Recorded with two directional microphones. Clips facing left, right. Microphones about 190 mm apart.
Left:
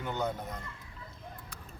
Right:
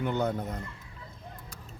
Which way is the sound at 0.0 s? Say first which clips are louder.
Right 5 dB; 60° right (ahead or behind).